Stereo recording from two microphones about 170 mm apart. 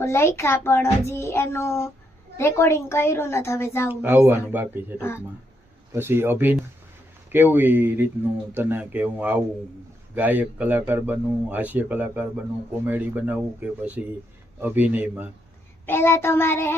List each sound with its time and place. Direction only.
0.0 s a child's voice: 15° left (ahead or behind)
3.8 s speech: 10° right (ahead or behind)
4.9 s a child's voice: 15° left (ahead or behind)
5.9 s speech: 15° right (ahead or behind)
15.9 s a child's voice: 15° left (ahead or behind)